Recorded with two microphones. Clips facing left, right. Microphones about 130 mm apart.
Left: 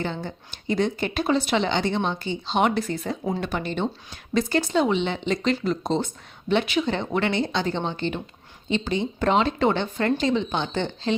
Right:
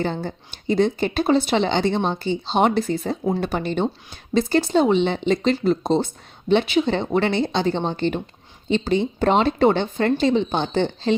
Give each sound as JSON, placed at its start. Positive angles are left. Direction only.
{"t": 0.0, "sound": "speech", "side_deg": -35}